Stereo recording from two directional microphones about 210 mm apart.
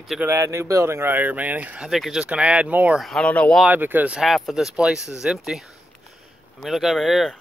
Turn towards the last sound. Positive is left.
turn(degrees=0)  # may be behind; listen again after turning